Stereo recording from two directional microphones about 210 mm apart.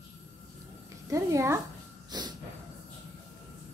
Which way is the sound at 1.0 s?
15° right (ahead or behind).